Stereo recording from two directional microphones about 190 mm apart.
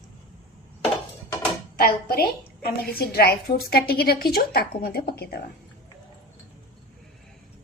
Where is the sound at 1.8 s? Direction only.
55° left (ahead or behind).